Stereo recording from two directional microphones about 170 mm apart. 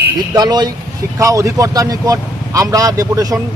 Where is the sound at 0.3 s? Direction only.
25° right (ahead or behind).